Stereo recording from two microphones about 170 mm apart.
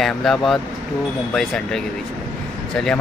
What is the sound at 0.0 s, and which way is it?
Speech, centre (ahead or behind).